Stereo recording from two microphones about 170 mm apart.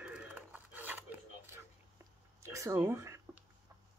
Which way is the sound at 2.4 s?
15° right (ahead or behind).